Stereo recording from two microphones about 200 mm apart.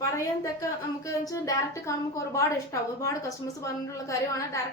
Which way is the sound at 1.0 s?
15° left (ahead or behind).